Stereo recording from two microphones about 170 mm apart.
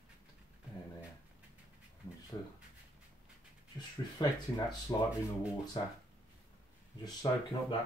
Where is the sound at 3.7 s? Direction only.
25° left (ahead or behind).